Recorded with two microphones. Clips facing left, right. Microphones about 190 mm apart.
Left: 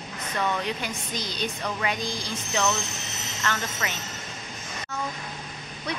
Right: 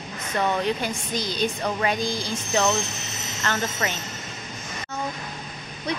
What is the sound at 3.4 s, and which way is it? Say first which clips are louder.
Speech: right 4 dB; 35° right (ahead or behind).